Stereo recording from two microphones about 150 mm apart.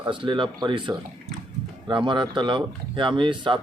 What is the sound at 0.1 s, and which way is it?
Speech, 35° right (ahead or behind).